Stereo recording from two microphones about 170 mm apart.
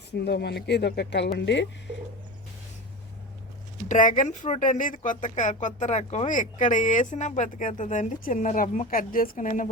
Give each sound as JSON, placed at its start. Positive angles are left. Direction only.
{"t": 0.1, "sound": "speech", "side_deg": 75}
{"t": 3.8, "sound": "speech", "side_deg": 50}